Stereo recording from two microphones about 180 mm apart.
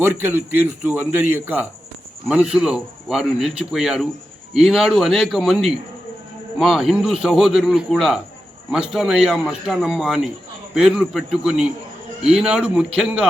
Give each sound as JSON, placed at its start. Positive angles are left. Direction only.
{"t": 0.0, "sound": "a man's voice", "side_deg": -15}